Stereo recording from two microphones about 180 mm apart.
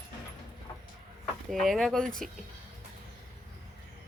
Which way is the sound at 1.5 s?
Centre (ahead or behind).